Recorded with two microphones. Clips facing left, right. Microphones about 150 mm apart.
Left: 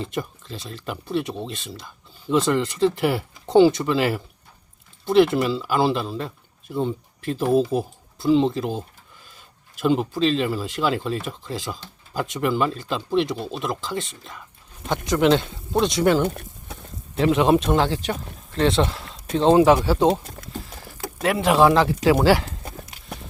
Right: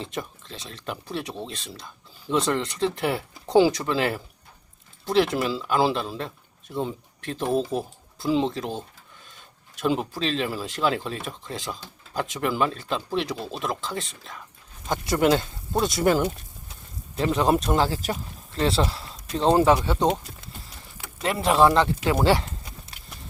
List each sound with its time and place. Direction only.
0.0 s speech: centre (ahead or behind)
16.2 s a sound: 60° left (ahead or behind)
17.2 s speech: centre (ahead or behind)
21.2 s speech: centre (ahead or behind)
22.9 s horse: 15° left (ahead or behind)